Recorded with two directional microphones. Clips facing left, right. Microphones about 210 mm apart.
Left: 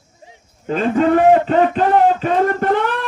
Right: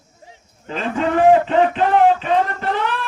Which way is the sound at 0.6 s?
40° left (ahead or behind).